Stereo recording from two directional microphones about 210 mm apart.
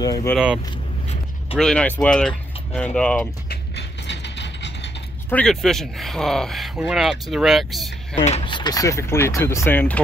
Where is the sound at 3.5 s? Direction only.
55° left (ahead or behind).